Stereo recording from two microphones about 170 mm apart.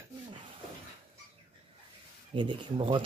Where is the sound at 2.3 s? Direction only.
30° right (ahead or behind).